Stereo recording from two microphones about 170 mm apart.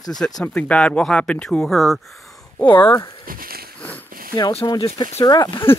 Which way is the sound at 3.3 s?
60° right (ahead or behind).